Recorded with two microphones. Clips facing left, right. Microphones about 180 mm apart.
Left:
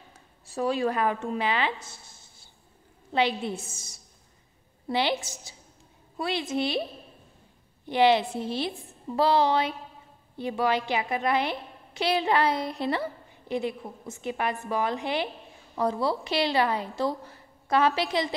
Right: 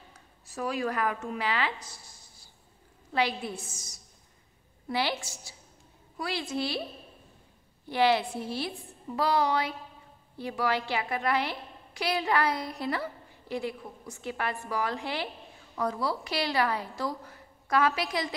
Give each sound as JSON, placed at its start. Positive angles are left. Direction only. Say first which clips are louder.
{"t": 0.5, "sound": "a woman's voice", "louder": "left 5 dB", "side_deg": 30}
{"t": 7.8, "sound": "a woman's voice", "louder": "left 4 dB", "side_deg": 20}